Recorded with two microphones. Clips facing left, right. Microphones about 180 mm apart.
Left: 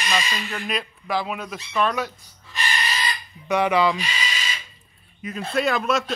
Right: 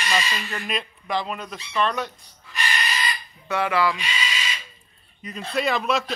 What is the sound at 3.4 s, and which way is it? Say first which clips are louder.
Speech: left 3 dB; 15° left (ahead or behind).